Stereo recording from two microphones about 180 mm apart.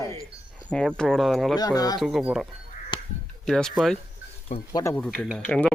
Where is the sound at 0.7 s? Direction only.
5° left (ahead or behind).